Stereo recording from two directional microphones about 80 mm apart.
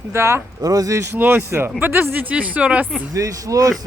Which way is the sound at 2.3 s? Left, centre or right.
Centre.